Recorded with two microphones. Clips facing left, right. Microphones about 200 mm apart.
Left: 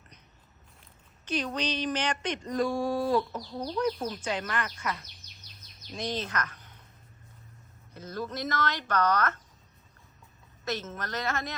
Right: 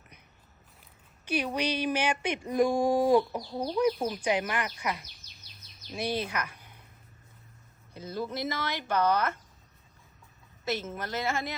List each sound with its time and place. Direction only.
1.2 s speech: 10° right (ahead or behind)
3.4 s speech: 30° right (ahead or behind)
3.8 s a woman's voice: 10° right (ahead or behind)
7.9 s speech: 10° right (ahead or behind)
10.7 s speech: 10° right (ahead or behind)